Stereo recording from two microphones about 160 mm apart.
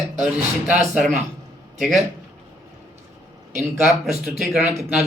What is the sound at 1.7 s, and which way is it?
Speech, centre (ahead or behind).